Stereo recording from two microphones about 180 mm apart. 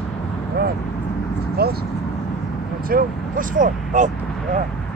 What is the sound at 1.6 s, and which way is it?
Speech, 60° right (ahead or behind).